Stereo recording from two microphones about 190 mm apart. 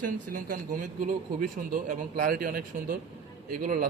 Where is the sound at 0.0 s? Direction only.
45° right (ahead or behind).